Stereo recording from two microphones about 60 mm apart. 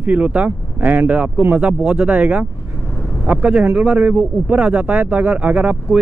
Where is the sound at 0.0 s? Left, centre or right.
Right.